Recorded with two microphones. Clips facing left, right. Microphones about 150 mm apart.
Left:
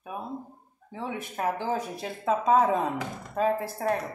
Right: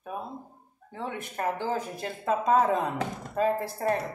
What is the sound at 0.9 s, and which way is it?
Speech, 5° left (ahead or behind).